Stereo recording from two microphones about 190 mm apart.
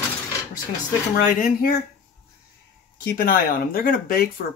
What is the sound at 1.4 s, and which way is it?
Speech, 50° left (ahead or behind).